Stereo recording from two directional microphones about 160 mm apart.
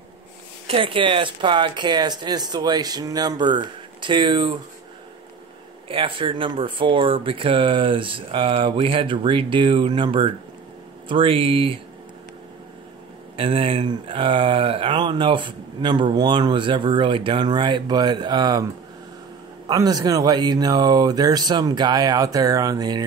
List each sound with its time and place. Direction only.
0.7 s speech: 35° right (ahead or behind)
5.9 s speech: 35° right (ahead or behind)
13.4 s speech: 35° right (ahead or behind)
19.7 s speech: 25° right (ahead or behind)